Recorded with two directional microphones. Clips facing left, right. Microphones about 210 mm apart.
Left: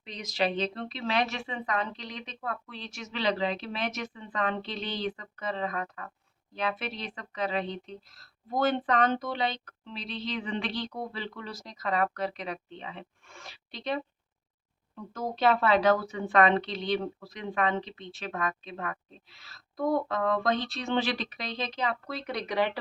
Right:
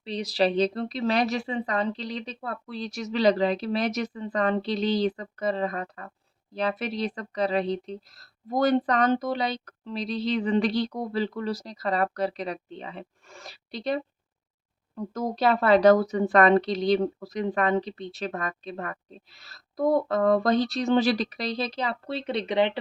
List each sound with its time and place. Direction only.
0.0 s a woman's voice: 35° right (ahead or behind)